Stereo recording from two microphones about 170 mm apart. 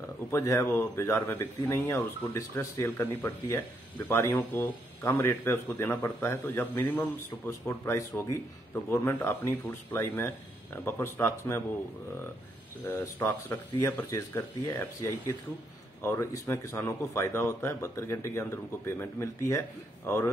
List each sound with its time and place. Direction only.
0.3 s speech: 15° left (ahead or behind)
12.8 s speech: 15° left (ahead or behind)